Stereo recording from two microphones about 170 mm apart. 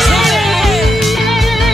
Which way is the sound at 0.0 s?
Centre (ahead or behind).